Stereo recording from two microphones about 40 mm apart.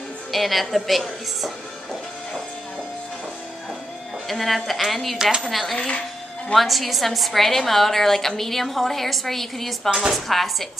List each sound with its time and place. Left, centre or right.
0.3 s a woman's voice: centre
1.4 s music: centre
4.3 s a woman's voice: centre
5.8 s speech: left
6.5 s a woman's voice: centre